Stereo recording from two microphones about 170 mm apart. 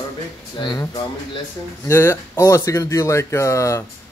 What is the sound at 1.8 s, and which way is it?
Speech, 15° left (ahead or behind).